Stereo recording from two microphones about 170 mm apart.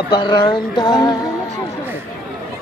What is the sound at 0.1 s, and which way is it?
Music, 25° left (ahead or behind).